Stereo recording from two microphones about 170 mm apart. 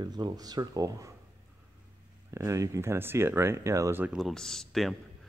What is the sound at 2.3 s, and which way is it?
Speech, 20° right (ahead or behind).